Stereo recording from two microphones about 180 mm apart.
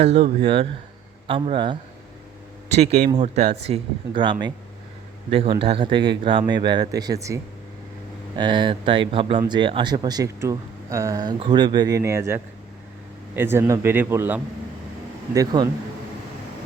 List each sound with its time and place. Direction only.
0.0 s speech: 35° right (ahead or behind)
3.1 s speech: 35° right (ahead or behind)
8.4 s a man's voice: 25° right (ahead or behind)
15.4 s speech: 20° right (ahead or behind)